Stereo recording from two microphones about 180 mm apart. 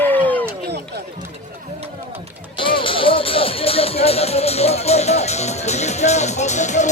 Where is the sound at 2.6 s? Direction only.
30° left (ahead or behind).